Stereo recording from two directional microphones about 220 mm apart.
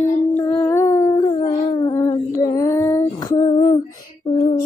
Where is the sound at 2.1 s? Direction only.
15° left (ahead or behind).